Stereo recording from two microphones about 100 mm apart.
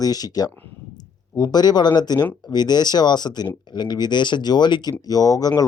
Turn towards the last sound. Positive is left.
turn(degrees=40)  # may be behind; listen again after turning